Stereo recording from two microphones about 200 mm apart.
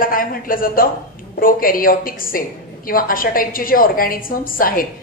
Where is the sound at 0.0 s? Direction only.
45° left (ahead or behind).